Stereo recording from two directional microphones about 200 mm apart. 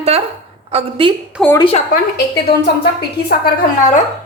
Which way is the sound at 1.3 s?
5° right (ahead or behind).